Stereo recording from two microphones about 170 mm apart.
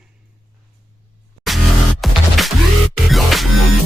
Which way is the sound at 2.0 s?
Centre (ahead or behind).